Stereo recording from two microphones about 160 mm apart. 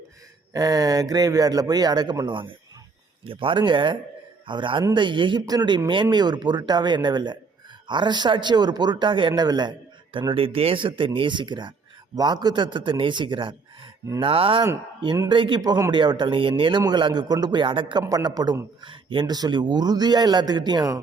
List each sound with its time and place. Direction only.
0.5 s speech: 25° right (ahead or behind)